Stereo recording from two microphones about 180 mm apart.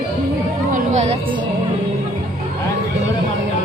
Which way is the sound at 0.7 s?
40° right (ahead or behind).